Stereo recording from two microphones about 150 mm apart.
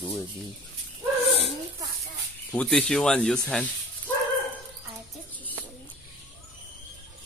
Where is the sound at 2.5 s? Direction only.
5° left (ahead or behind).